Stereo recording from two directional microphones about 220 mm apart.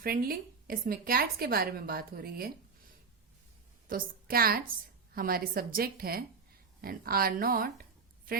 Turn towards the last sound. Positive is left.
turn(degrees=-40)  # may be behind; listen again after turning